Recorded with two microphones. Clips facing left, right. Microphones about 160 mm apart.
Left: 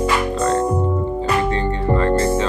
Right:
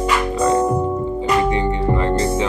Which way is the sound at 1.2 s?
15° right (ahead or behind).